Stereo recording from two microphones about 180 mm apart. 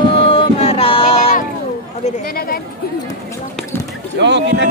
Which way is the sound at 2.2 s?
55° left (ahead or behind).